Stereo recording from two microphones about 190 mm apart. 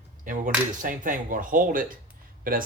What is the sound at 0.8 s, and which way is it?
Speech, 45° right (ahead or behind).